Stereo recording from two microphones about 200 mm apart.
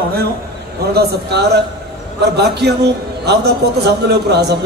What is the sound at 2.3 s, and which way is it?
A man's voice, 55° right (ahead or behind).